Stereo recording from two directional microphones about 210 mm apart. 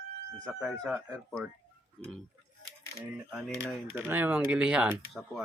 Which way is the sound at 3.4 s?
Centre (ahead or behind).